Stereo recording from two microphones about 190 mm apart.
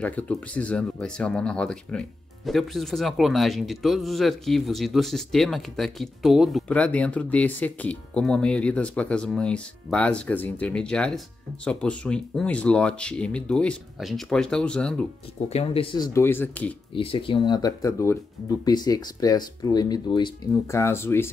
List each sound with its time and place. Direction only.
0.0 s speech: 10° left (ahead or behind)
15.4 s speech: 30° left (ahead or behind)
16.1 s speech: 10° left (ahead or behind)
16.9 s speech: 30° left (ahead or behind); by 21.3 s 10° left (ahead or behind)